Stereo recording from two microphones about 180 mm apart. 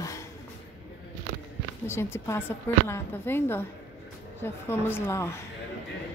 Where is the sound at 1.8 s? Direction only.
15° left (ahead or behind).